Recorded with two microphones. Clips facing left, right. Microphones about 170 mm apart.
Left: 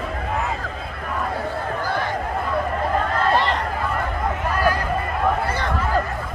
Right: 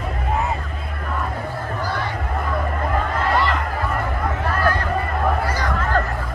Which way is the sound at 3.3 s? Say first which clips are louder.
Even; 30° left (ahead or behind).